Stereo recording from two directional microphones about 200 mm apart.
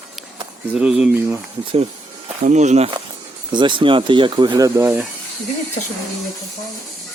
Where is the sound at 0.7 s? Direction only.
5° right (ahead or behind).